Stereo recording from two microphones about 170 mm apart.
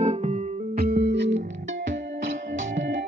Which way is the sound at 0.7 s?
65° right (ahead or behind).